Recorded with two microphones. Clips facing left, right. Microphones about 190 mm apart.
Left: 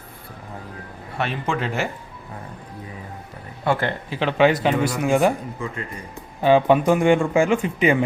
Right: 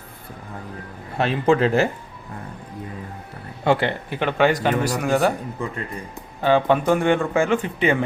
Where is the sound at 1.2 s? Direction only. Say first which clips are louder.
Right 7 dB; 35° right (ahead or behind).